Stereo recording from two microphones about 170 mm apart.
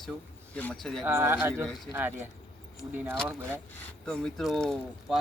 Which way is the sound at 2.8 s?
10° right (ahead or behind).